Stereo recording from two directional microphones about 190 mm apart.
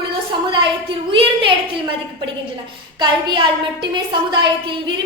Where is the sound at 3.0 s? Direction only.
25° right (ahead or behind).